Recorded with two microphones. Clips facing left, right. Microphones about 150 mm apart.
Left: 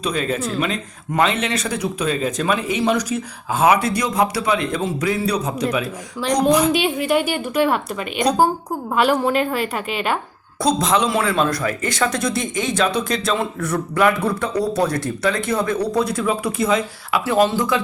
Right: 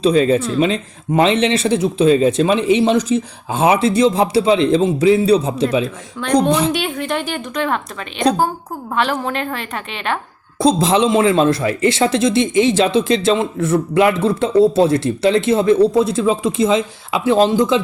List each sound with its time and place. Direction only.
0.0 s a man's voice: 30° right (ahead or behind)
6.2 s a woman's voice: 5° left (ahead or behind)
10.6 s a man's voice: 30° right (ahead or behind)